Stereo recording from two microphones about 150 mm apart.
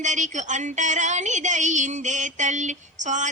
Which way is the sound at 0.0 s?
55° right (ahead or behind).